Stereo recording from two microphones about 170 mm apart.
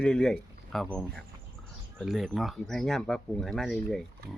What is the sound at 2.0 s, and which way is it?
Speech, centre (ahead or behind).